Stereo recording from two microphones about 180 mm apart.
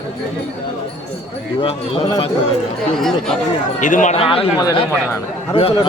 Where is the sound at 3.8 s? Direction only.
45° left (ahead or behind).